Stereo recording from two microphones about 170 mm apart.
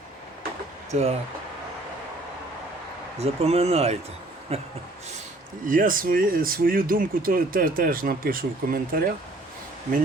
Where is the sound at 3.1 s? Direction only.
35° right (ahead or behind).